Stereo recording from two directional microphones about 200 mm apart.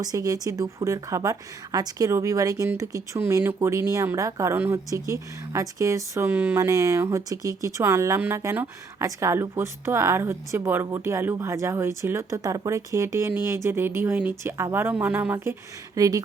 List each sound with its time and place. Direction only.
0.0 s speech: 20° right (ahead or behind)